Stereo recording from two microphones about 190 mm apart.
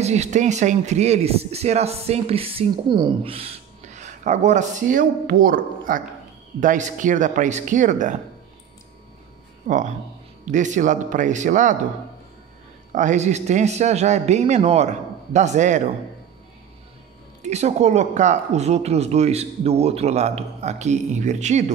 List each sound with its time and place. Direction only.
0.0 s speech: 35° right (ahead or behind)
9.7 s speech: 40° right (ahead or behind)
12.9 s speech: 40° right (ahead or behind)
17.4 s speech: 35° right (ahead or behind)